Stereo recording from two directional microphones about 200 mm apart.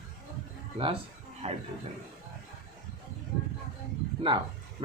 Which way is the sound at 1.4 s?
30° right (ahead or behind).